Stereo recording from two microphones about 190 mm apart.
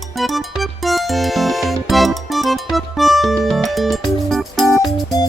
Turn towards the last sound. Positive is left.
turn(degrees=20)  # may be behind; listen again after turning